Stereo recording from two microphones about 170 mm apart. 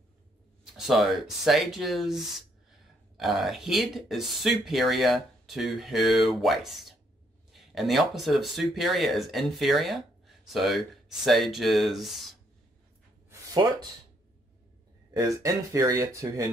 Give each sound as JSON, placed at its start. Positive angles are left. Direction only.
{"t": 0.7, "sound": "speech", "side_deg": 0}
{"t": 13.3, "sound": "a sound", "side_deg": -20}
{"t": 15.1, "sound": "speech", "side_deg": -20}